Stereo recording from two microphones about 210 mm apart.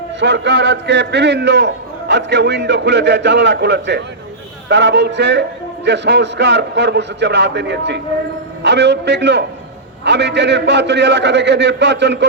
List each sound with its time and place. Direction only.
0.2 s a man's voice: 55° right (ahead or behind)